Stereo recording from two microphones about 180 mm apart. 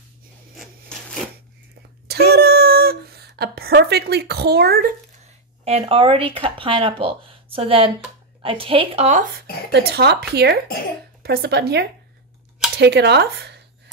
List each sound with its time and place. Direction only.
0.6 s wood: 5° left (ahead or behind)
2.0 s a sound: 60° right (ahead or behind)
5.2 s a woman's voice: 35° right (ahead or behind)
9.7 s speech: 65° right (ahead or behind)